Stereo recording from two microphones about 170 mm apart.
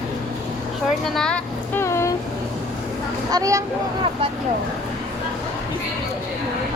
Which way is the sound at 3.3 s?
20° right (ahead or behind).